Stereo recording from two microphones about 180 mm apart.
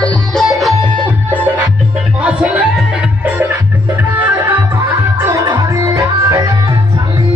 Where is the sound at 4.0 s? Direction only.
10° right (ahead or behind).